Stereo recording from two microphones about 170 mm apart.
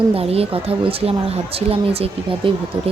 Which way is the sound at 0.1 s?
35° right (ahead or behind).